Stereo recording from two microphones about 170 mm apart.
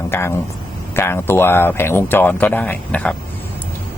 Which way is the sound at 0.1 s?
15° left (ahead or behind).